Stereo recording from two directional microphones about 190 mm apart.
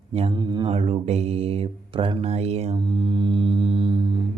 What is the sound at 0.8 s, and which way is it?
Mantra, 35° right (ahead or behind).